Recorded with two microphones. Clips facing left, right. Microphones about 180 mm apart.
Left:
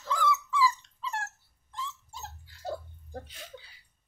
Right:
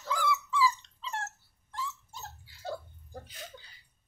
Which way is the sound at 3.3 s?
Centre (ahead or behind).